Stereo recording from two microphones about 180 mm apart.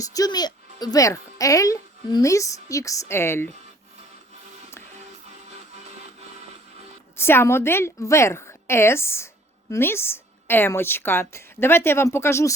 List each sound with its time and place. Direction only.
0.0 s speech: 20° left (ahead or behind)
7.2 s a woman's voice: 15° left (ahead or behind)